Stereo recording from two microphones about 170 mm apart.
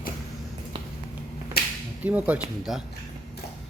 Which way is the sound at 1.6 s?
65° left (ahead or behind).